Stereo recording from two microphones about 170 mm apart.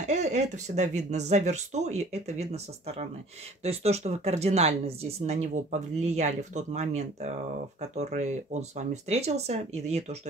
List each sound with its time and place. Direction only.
0.0 s speech: 45° right (ahead or behind)